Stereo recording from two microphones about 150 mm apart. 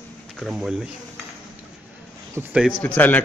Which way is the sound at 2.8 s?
10° left (ahead or behind).